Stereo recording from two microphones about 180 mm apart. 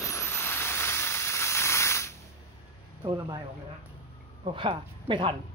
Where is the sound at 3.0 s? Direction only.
25° right (ahead or behind).